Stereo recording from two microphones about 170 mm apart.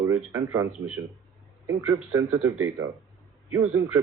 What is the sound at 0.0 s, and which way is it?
A man's voice, 15° right (ahead or behind).